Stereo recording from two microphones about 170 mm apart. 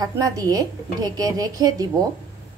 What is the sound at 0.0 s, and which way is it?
A woman's voice, 20° right (ahead or behind).